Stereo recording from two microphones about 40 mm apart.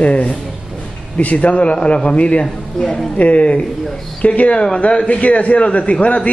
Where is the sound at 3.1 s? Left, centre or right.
Left.